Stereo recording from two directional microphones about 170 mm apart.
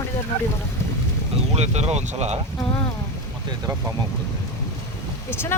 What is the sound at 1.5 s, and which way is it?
Speech, 40° right (ahead or behind).